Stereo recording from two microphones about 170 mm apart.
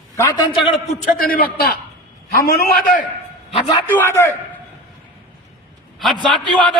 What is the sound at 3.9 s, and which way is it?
Speech, 15° left (ahead or behind).